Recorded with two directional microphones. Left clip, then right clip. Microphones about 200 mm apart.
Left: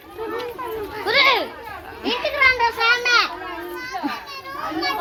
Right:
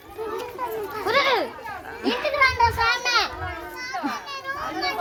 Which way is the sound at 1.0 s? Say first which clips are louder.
Left 4 dB; 30° right (ahead or behind).